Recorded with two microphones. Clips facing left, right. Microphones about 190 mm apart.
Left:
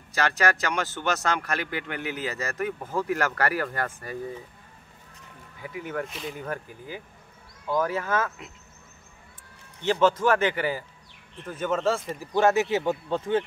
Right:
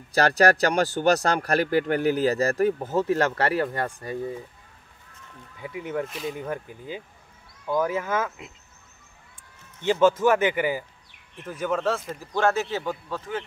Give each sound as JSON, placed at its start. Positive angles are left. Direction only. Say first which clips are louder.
{"t": 0.1, "sound": "speech", "louder": "right 6 dB", "side_deg": -35}
{"t": 5.6, "sound": "a man's voice", "louder": "right 3 dB", "side_deg": -20}
{"t": 9.8, "sound": "a man's voice", "louder": "right 2 dB", "side_deg": -10}
{"t": 11.8, "sound": "speech", "louder": "left 1 dB", "side_deg": 5}